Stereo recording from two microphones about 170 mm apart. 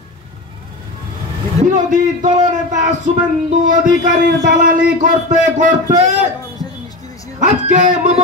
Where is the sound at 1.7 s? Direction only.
45° right (ahead or behind).